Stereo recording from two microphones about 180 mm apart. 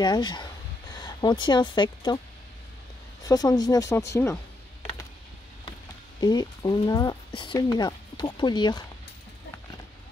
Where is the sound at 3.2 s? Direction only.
20° left (ahead or behind).